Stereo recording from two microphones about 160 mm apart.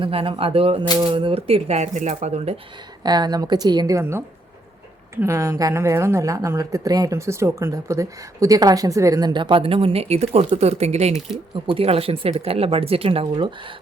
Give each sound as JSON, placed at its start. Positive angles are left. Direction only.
{"t": 0.0, "sound": "speech", "side_deg": -35}
{"t": 3.0, "sound": "a woman's voice", "side_deg": -25}